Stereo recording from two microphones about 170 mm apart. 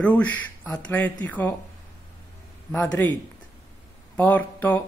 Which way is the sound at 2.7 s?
10° left (ahead or behind).